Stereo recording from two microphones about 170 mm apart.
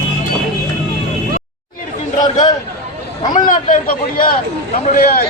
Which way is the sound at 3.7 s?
55° left (ahead or behind).